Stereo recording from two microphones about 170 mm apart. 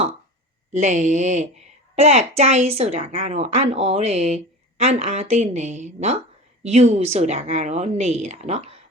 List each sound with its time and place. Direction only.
0.7 s a woman's voice: 45° right (ahead or behind)